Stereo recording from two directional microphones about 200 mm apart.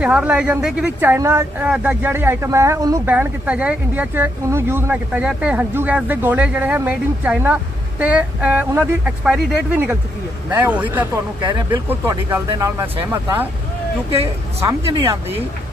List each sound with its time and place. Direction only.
0.0 s speech: 5° right (ahead or behind)
14.6 s speech: 15° right (ahead or behind)